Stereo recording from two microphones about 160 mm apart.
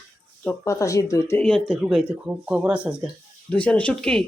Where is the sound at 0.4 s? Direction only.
20° left (ahead or behind).